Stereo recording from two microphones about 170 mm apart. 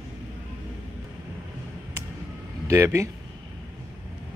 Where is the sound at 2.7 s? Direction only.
15° right (ahead or behind).